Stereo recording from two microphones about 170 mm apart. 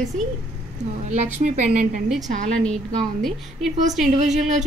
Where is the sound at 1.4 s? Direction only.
45° right (ahead or behind).